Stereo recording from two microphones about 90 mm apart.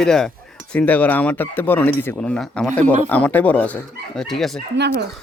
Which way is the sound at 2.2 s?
10° left (ahead or behind).